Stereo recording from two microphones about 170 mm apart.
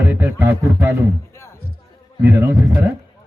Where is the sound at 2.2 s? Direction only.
15° right (ahead or behind).